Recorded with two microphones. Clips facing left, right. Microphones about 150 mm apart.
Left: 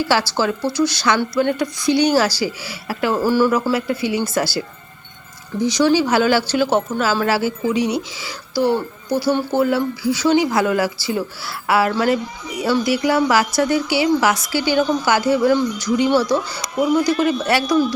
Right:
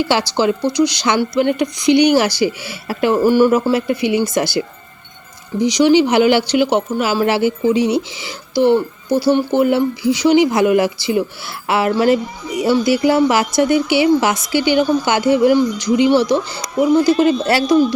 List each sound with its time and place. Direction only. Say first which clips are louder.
0.0 s speech: right 3 dB; 20° right (ahead or behind)